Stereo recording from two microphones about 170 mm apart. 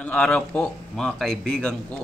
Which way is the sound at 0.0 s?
5° left (ahead or behind).